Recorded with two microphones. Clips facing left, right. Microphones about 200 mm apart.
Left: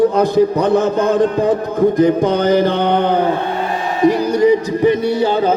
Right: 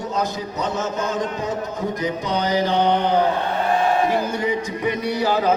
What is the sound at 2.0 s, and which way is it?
Mantra, 50° left (ahead or behind).